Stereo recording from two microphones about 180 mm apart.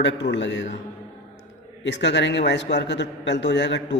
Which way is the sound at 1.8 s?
80° left.